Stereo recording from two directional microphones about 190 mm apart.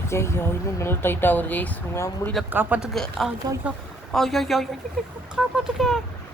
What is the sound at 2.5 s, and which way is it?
Speech, 10° right (ahead or behind).